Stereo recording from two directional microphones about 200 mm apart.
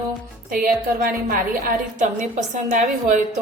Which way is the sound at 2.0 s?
40° right (ahead or behind).